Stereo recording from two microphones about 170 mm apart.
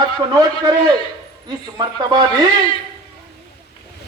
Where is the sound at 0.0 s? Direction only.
20° right (ahead or behind).